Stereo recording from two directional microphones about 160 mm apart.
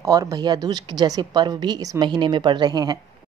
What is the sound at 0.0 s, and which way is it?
A woman's voice, 20° right (ahead or behind).